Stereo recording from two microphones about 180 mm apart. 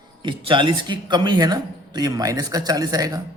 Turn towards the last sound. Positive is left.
turn(degrees=-20)  # may be behind; listen again after turning